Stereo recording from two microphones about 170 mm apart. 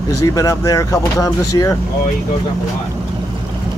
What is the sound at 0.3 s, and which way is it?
Speech, 20° left (ahead or behind).